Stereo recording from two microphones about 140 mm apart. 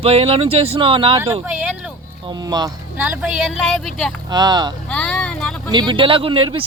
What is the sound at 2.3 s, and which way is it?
Speech, 30° right (ahead or behind).